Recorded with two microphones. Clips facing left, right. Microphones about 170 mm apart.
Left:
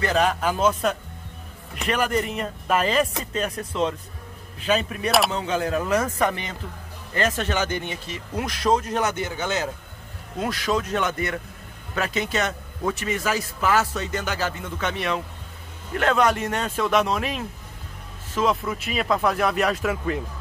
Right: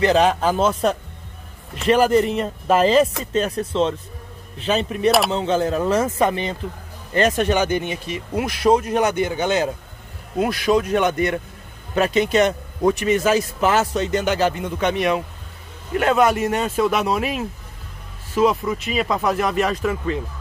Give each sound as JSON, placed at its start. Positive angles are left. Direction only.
{"t": 0.0, "sound": "a man's voice", "side_deg": -25}